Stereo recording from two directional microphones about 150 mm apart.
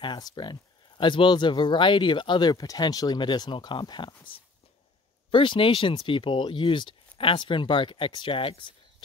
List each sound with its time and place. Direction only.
0.0 s speech: 30° left (ahead or behind)